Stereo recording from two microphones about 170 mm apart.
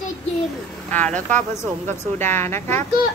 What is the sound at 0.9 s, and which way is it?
A child's voice, 10° left (ahead or behind).